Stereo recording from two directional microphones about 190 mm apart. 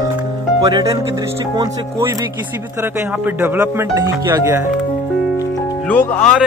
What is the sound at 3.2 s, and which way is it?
A man's voice, 10° right (ahead or behind).